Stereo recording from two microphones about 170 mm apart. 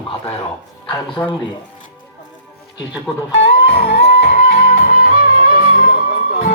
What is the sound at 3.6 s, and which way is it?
Music, 65° left (ahead or behind).